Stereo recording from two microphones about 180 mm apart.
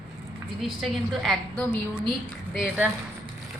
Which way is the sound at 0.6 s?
Centre (ahead or behind).